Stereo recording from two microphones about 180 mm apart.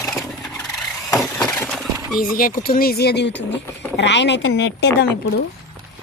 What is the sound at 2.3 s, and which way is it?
A woman's voice, 55° left (ahead or behind).